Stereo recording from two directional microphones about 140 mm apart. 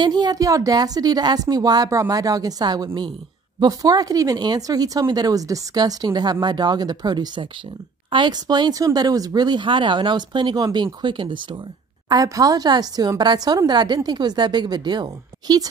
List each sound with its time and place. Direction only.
0.0 s speech: 30° right (ahead or behind)